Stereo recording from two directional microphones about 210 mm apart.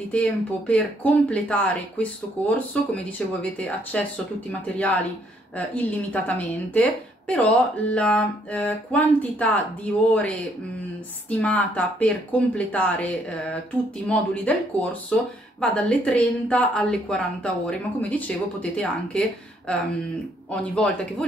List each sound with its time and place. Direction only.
0.1 s a woman's voice: 5° left (ahead or behind)
11.2 s a woman's voice: 5° left (ahead or behind)
20.7 s a woman's voice: 5° left (ahead or behind)